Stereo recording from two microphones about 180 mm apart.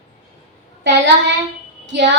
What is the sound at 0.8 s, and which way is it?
A woman's voice, 80° right.